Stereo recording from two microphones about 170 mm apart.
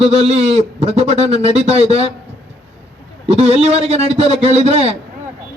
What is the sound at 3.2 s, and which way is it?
A man's voice, 35° right (ahead or behind).